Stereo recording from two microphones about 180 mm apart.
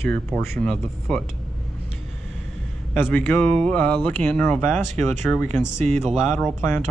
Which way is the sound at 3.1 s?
10° left (ahead or behind).